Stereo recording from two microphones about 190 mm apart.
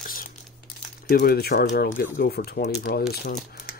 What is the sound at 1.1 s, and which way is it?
Speech, 50° left (ahead or behind).